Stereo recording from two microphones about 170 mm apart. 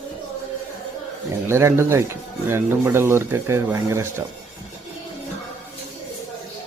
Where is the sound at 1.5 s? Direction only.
15° right (ahead or behind).